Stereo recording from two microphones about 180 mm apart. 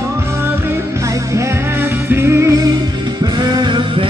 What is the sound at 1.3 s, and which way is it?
Music, 15° right (ahead or behind).